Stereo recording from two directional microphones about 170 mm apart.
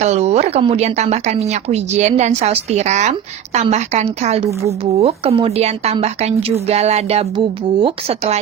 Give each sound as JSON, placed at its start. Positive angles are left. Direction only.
{"t": 0.0, "sound": "speech", "side_deg": -40}